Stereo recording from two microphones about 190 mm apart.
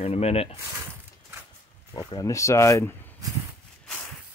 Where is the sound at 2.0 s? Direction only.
20° left (ahead or behind).